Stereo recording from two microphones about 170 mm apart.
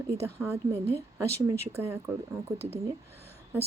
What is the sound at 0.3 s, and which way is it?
A woman's voice, 15° right (ahead or behind).